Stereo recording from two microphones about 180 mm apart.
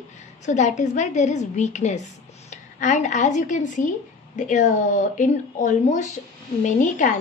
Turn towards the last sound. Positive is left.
turn(degrees=45)  # may be behind; listen again after turning